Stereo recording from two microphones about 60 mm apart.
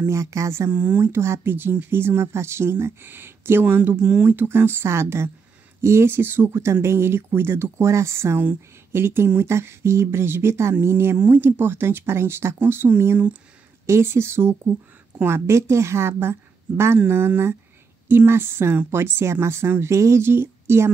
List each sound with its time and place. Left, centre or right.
0.1 s speech: right
0.7 s speech: right
1.0 s speech: right
4.0 s speech: centre
4.3 s speech: right
6.5 s speech: right
13.8 s speech: right
18.0 s speech: right